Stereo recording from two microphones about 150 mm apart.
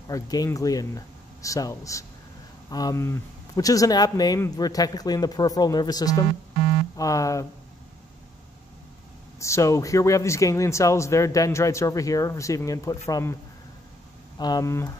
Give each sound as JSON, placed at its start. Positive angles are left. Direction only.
{"t": 0.1, "sound": "speech", "side_deg": 25}
{"t": 9.4, "sound": "speech", "side_deg": 20}
{"t": 14.4, "sound": "speech", "side_deg": 25}